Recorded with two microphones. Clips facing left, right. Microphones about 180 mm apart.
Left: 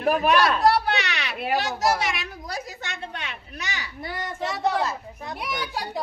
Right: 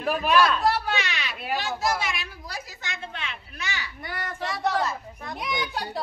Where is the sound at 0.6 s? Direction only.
70° left (ahead or behind).